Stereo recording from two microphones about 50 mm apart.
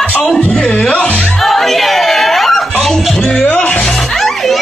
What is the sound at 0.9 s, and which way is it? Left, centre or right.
Music, left.